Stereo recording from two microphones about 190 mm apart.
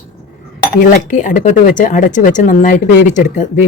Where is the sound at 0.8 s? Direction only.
40° left (ahead or behind).